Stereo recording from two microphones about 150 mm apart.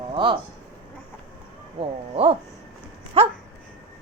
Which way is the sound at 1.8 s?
40° right (ahead or behind).